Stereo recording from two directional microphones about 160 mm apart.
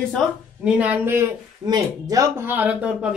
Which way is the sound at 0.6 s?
10° right (ahead or behind).